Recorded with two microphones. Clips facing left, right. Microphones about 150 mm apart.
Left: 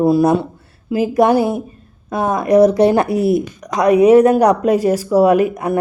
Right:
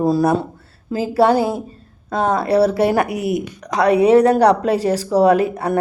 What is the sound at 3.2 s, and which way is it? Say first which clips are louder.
Speech: left 6 dB; 30° left (ahead or behind).